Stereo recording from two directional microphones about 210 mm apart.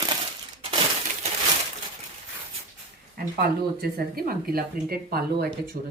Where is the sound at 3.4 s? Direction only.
45° right (ahead or behind).